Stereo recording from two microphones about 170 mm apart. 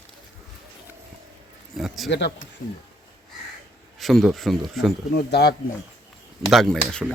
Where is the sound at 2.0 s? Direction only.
90° left.